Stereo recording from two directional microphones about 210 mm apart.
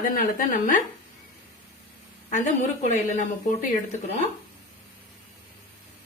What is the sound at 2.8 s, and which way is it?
Speech, 35° left (ahead or behind).